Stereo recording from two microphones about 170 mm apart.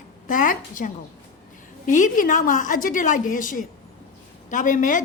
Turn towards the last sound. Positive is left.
turn(degrees=50)  # may be behind; listen again after turning